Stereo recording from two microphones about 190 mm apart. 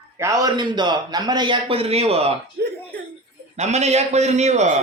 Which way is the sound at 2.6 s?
55° right (ahead or behind).